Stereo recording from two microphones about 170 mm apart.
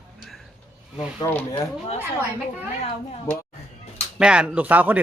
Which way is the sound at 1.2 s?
25° left (ahead or behind).